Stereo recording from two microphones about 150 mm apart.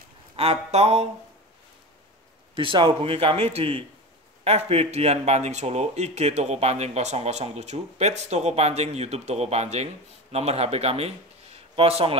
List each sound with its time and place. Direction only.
0.4 s speech: 45° right (ahead or behind)
2.5 s speech: 35° right (ahead or behind)